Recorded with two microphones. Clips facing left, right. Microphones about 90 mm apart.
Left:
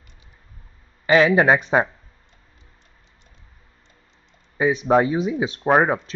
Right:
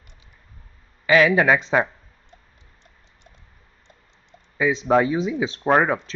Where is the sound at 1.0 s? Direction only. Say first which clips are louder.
Left 1 dB; 30° left (ahead or behind).